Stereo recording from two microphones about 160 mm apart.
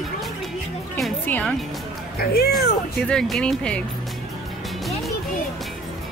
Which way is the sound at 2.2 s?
75° left (ahead or behind).